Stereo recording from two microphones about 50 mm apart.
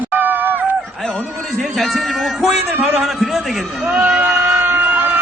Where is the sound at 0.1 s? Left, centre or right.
Right.